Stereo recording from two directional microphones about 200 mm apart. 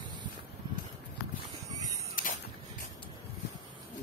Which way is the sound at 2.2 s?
45° left (ahead or behind).